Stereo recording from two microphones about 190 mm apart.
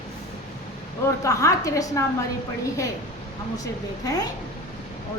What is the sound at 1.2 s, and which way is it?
Speech, 15° left (ahead or behind).